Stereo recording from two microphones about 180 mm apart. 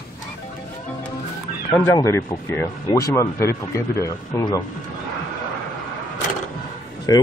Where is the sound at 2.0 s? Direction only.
15° left (ahead or behind).